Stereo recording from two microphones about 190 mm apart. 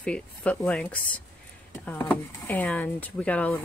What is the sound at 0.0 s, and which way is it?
Speech, 5° left (ahead or behind).